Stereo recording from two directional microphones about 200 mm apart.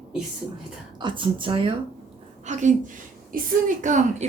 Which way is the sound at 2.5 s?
35° right (ahead or behind).